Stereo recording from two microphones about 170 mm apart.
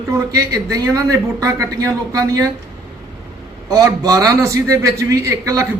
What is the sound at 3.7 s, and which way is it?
A man's voice, 20° right (ahead or behind).